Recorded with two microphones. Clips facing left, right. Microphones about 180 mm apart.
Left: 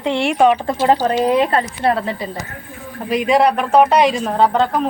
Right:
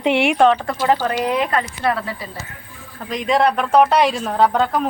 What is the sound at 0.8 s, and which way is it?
Speech, 35° left (ahead or behind).